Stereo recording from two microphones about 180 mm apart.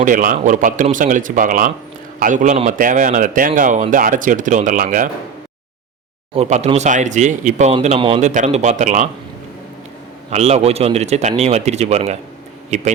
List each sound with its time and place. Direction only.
0.0 s a man's voice: 45° right (ahead or behind)
6.3 s speech: 35° right (ahead or behind)
8.3 s speech: 40° right (ahead or behind)
10.2 s speech: 35° right (ahead or behind)